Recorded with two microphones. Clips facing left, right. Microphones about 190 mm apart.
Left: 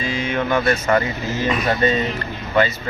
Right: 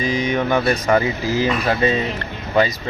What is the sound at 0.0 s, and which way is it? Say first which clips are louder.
Speech: right 3 dB; 15° right (ahead or behind).